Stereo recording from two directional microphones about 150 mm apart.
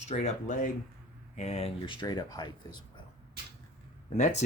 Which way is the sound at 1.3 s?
45° left (ahead or behind).